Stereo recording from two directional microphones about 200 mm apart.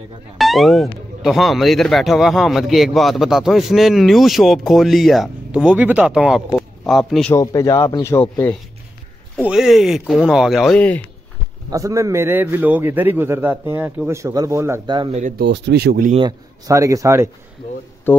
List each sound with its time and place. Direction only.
0.4 s a man's voice: centre (ahead or behind)
7.3 s speech: 15° left (ahead or behind)
9.4 s speech: 5° right (ahead or behind)
11.7 s a man's voice: 15° right (ahead or behind)
15.1 s speech: 40° right (ahead or behind)
15.4 s speech: 60° right (ahead or behind)
16.1 s a man's voice: 20° right (ahead or behind)
18.1 s speech: 10° left (ahead or behind)